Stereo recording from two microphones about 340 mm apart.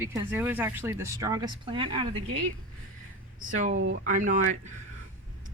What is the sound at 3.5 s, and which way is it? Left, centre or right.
Speech, right.